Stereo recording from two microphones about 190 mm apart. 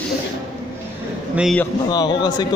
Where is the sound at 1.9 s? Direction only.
20° left (ahead or behind).